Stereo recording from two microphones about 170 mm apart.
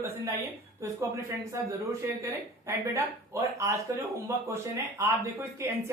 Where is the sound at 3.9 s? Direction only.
20° right (ahead or behind).